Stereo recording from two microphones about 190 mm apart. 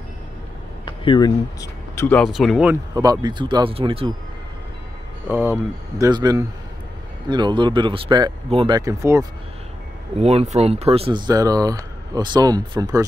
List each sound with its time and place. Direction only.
0.8 s speech: 25° left (ahead or behind)
2.0 s speech: centre (ahead or behind)
2.9 s speech: 20° right (ahead or behind)
5.3 s speech: 10° right (ahead or behind)
10.1 s speech: 35° right (ahead or behind)